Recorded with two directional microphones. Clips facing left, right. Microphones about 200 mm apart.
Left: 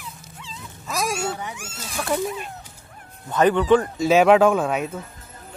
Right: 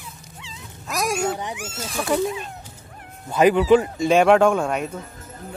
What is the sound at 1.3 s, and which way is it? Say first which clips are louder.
Speech: right 3 dB; 20° right (ahead or behind).